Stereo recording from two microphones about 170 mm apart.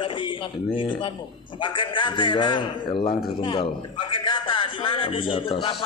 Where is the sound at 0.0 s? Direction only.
30° left (ahead or behind).